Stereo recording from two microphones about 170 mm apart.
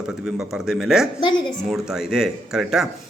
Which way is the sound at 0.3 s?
5° right (ahead or behind).